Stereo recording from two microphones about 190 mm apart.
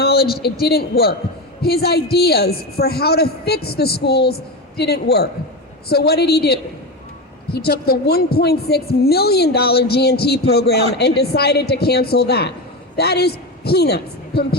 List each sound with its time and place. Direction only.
0.0 s a man's voice: 55° left (ahead or behind)